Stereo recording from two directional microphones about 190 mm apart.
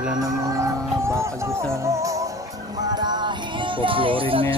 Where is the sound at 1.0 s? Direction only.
15° right (ahead or behind).